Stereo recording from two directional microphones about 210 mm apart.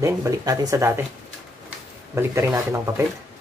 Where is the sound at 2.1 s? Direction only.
15° right (ahead or behind).